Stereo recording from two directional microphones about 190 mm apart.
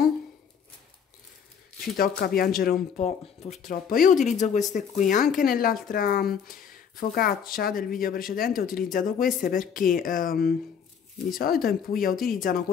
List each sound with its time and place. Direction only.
2.0 s speech: 50° left (ahead or behind)
3.0 s speech: 35° left (ahead or behind)
11.6 s speech: 50° left (ahead or behind)